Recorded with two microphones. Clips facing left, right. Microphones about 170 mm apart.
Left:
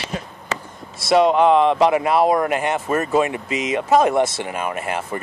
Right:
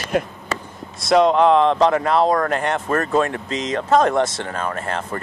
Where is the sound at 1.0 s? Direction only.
5° left (ahead or behind).